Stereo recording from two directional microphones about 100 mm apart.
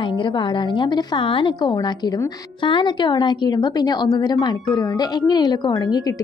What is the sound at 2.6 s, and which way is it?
A woman's voice, 50° left (ahead or behind).